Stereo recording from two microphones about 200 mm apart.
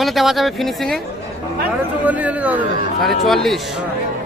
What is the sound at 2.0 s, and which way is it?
Speech, 5° right (ahead or behind).